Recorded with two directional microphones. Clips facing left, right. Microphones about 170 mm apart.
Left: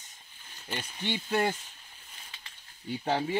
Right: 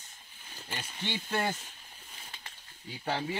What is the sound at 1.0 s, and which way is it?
Speech, 15° left (ahead or behind).